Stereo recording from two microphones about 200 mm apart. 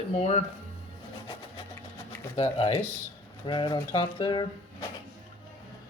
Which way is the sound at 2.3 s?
30° left (ahead or behind).